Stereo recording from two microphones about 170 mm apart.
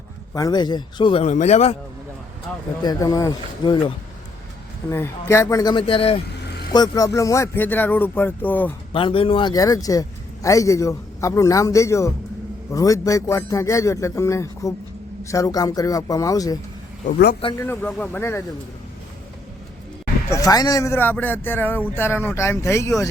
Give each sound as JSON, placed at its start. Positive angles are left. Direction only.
{"t": 0.3, "sound": "a man's voice", "side_deg": 25}
{"t": 1.3, "sound": "speech", "side_deg": 45}
{"t": 2.8, "sound": "a man's voice", "side_deg": 20}
{"t": 4.9, "sound": "a man's voice", "side_deg": 15}
{"t": 6.7, "sound": "speech", "side_deg": 20}
{"t": 8.9, "sound": "a man's voice", "side_deg": 30}
{"t": 17.6, "sound": "speech", "side_deg": 15}
{"t": 20.3, "sound": "speech", "side_deg": 20}